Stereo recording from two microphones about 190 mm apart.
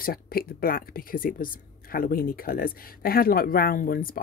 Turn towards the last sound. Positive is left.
turn(degrees=50)  # may be behind; listen again after turning